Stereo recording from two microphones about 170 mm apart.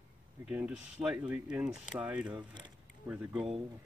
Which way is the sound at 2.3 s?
25° right (ahead or behind).